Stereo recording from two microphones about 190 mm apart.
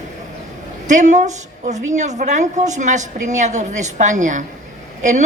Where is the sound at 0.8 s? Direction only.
40° right (ahead or behind).